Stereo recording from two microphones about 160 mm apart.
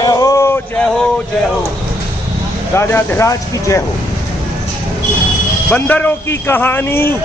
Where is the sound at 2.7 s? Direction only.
15° left (ahead or behind).